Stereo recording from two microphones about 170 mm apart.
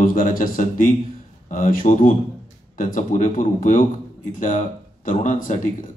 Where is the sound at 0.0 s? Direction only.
55° left (ahead or behind).